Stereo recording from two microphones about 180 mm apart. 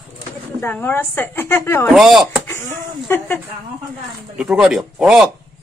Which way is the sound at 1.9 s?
Centre (ahead or behind).